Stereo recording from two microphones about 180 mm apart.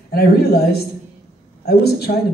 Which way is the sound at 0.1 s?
60° left (ahead or behind).